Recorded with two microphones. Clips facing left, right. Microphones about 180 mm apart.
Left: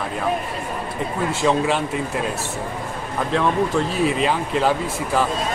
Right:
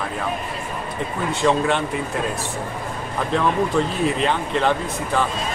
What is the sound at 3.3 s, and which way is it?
Speech, centre (ahead or behind).